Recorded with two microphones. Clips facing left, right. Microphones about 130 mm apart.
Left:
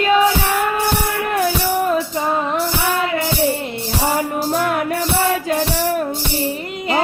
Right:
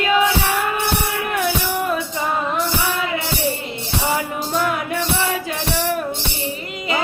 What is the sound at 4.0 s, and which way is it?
Music, 45° left (ahead or behind).